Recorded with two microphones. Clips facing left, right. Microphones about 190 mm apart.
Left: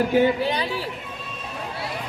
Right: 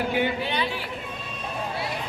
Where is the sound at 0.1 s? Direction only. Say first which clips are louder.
Left 6 dB; 40° left (ahead or behind).